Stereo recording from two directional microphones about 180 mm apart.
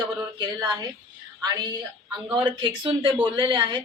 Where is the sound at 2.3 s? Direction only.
25° right (ahead or behind).